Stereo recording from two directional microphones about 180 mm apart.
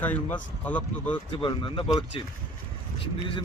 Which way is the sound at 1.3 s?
30° left (ahead or behind).